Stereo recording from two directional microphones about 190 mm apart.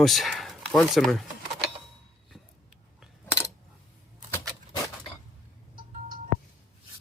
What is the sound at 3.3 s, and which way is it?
Coin, 15° left (ahead or behind).